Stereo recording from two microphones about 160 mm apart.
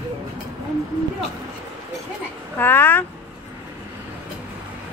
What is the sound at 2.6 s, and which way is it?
Speech, 15° left (ahead or behind).